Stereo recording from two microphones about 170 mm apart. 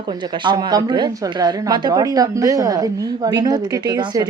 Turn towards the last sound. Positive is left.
turn(degrees=-25)  # may be behind; listen again after turning